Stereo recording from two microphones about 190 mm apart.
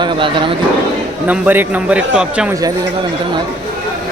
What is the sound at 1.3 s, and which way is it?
A man's voice, 10° right (ahead or behind).